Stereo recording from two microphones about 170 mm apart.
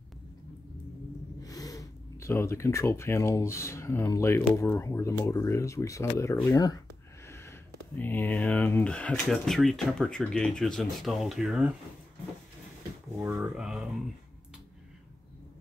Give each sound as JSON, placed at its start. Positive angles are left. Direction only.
{"t": 1.4, "sound": "speech", "side_deg": 20}
{"t": 7.2, "sound": "a sound", "side_deg": 15}
{"t": 8.0, "sound": "speech", "side_deg": 10}
{"t": 13.2, "sound": "speech", "side_deg": -5}